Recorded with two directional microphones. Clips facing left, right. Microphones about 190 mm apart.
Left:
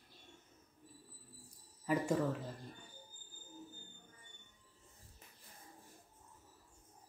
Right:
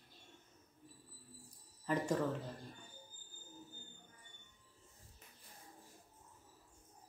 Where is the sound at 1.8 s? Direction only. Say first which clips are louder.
Left 2 dB; 10° left (ahead or behind).